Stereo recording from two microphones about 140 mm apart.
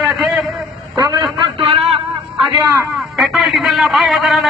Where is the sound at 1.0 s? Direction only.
30° right (ahead or behind).